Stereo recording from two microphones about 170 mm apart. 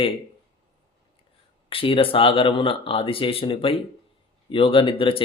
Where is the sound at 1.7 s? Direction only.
30° left (ahead or behind).